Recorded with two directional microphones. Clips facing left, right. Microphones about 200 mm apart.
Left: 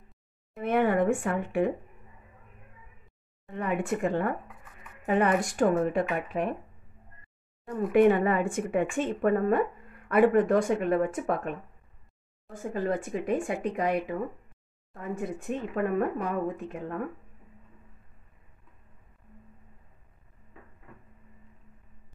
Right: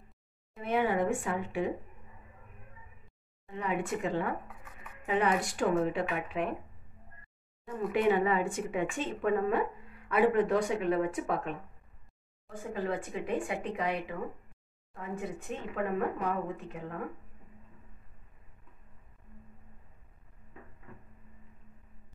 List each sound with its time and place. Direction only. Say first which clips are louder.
0.6 s speech: left 4 dB; 55° left (ahead or behind)
3.5 s speech: left 4 dB; 50° left (ahead or behind)
7.9 s speech: left 6 dB; 50° left (ahead or behind)
12.7 s speech: left 5 dB; 45° left (ahead or behind)